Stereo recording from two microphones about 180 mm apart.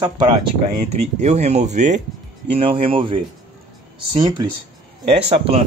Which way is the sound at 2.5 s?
30° right (ahead or behind).